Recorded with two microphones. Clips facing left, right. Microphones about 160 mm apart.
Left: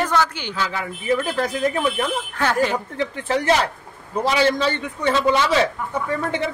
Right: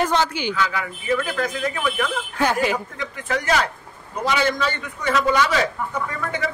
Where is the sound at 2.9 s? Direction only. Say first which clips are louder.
Left 4 dB; 30° left (ahead or behind).